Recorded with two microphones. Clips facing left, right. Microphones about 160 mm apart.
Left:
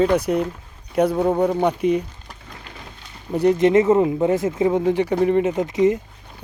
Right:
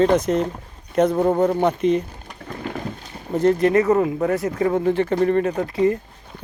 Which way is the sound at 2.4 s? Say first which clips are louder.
Right 14 dB; 50° right (ahead or behind).